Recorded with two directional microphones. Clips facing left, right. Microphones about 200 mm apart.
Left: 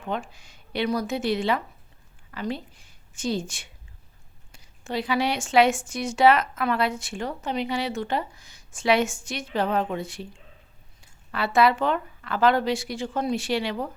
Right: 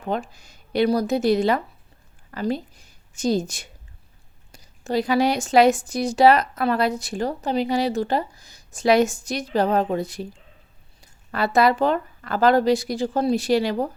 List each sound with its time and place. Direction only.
0.0 s a woman's voice: 40° right (ahead or behind)